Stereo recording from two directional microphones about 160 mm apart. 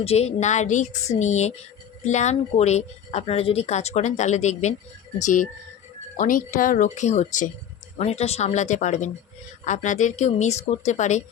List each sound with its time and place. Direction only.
0.0 s speech: 40° left (ahead or behind)